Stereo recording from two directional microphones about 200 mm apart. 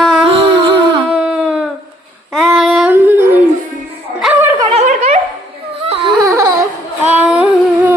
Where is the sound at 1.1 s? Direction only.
5° right (ahead or behind).